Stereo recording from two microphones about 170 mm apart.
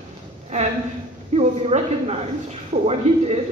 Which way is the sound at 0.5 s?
40° right (ahead or behind).